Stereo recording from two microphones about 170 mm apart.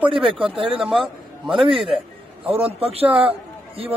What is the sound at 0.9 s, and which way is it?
Speech, centre (ahead or behind).